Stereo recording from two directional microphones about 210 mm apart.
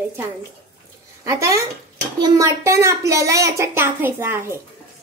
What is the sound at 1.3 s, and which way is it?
A child's voice, 15° right (ahead or behind).